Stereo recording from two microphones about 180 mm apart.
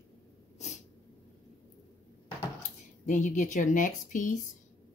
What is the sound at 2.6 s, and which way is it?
Speech, 45° left (ahead or behind).